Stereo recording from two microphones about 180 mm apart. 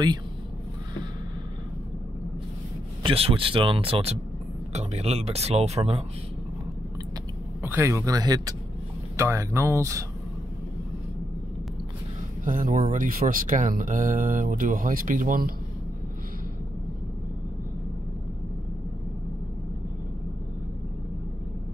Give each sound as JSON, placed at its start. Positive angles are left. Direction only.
{"t": 3.0, "sound": "speech", "side_deg": -30}
{"t": 7.6, "sound": "speech", "side_deg": -15}
{"t": 12.4, "sound": "speech", "side_deg": -50}